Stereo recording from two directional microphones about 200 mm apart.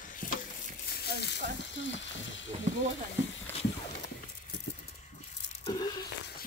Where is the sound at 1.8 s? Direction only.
65° left (ahead or behind).